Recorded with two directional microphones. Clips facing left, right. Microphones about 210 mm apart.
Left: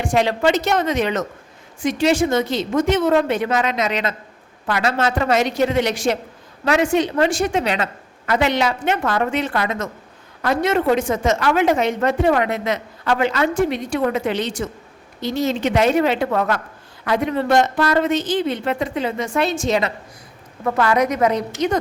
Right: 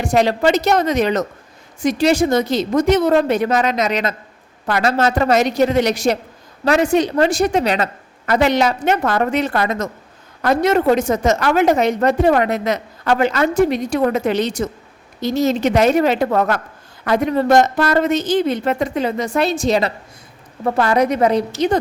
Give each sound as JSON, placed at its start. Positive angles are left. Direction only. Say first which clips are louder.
{"t": 0.0, "sound": "a woman's voice", "louder": "right 2 dB", "side_deg": -40}